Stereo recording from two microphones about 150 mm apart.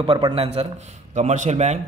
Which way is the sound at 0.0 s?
30° right (ahead or behind).